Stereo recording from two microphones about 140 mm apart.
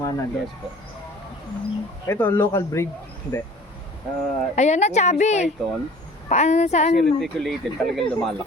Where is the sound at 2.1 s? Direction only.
15° left (ahead or behind).